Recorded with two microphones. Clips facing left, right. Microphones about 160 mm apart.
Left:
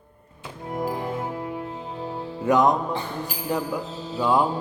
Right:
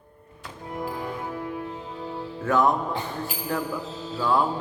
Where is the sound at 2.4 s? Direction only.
15° left (ahead or behind).